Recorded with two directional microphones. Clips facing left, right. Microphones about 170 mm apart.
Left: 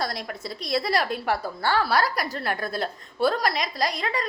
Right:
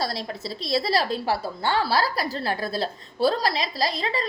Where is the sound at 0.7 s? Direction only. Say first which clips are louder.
Right 1 dB; 30° right (ahead or behind).